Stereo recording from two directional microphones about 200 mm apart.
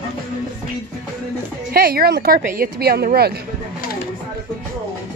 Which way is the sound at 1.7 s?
50° right (ahead or behind).